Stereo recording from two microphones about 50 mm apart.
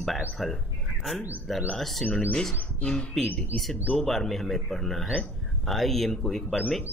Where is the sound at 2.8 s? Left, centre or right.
Left.